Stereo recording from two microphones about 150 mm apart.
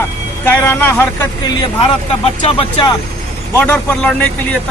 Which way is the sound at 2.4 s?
35° left (ahead or behind).